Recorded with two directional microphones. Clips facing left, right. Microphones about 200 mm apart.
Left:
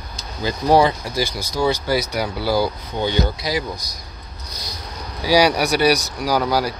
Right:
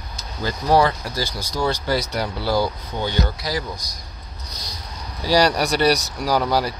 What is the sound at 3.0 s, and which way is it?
Speech, 20° left (ahead or behind).